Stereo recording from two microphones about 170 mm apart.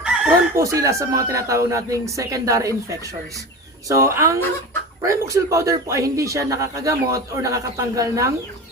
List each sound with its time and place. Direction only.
0.1 s chicken: 5° right (ahead or behind)
0.5 s a man's voice: 20° right (ahead or behind)
3.8 s a man's voice: 15° right (ahead or behind)